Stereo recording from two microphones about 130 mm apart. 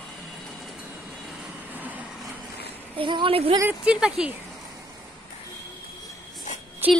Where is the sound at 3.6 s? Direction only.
10° right (ahead or behind).